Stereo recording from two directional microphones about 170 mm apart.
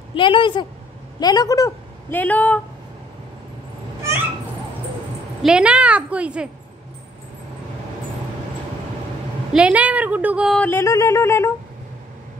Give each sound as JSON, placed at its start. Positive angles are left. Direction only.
{"t": 0.1, "sound": "a woman's voice", "side_deg": 30}
{"t": 5.4, "sound": "a woman's voice", "side_deg": -5}
{"t": 9.5, "sound": "a woman's voice", "side_deg": -5}
{"t": 10.6, "sound": "a sound", "side_deg": 15}